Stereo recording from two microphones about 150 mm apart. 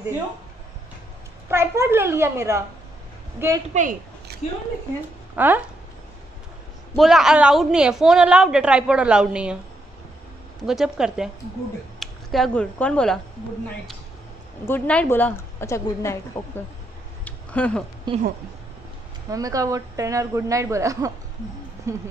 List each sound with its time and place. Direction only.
1.5 s a child's voice: 15° right (ahead or behind)
3.7 s a sound: 60° right (ahead or behind)
5.3 s speech: 15° right (ahead or behind)
7.0 s a woman's voice: centre (ahead or behind)
10.6 s a woman's voice: centre (ahead or behind)
12.0 s a sound: centre (ahead or behind)
12.7 s a woman's voice: 5° left (ahead or behind)
14.7 s a woman's voice: 10° left (ahead or behind)
17.2 s a sound: 10° left (ahead or behind)
18.1 s speech: 30° right (ahead or behind)
19.3 s speech: 25° right (ahead or behind)